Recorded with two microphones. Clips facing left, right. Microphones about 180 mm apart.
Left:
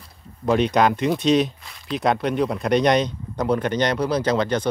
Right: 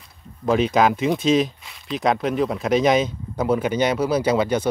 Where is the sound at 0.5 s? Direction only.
Centre (ahead or behind).